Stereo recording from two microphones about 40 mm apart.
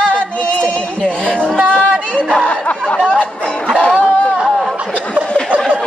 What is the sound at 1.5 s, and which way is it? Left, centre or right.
Chatter, right.